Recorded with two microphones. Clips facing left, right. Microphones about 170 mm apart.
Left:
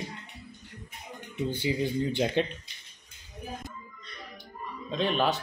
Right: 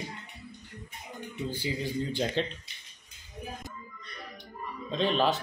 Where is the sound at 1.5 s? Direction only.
20° left (ahead or behind).